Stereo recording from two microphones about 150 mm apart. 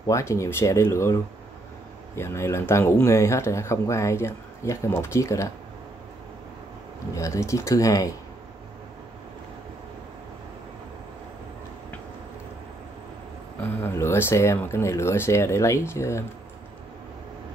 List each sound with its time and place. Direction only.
0.0 s speech: 20° left (ahead or behind)
7.2 s speech: 20° left (ahead or behind)
13.6 s speech: 15° left (ahead or behind)